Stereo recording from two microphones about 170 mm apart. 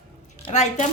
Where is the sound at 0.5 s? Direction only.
45° left (ahead or behind).